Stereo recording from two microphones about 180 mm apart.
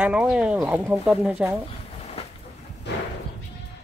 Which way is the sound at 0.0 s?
5° right (ahead or behind).